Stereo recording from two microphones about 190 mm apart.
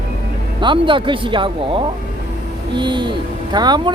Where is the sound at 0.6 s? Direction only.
25° right (ahead or behind).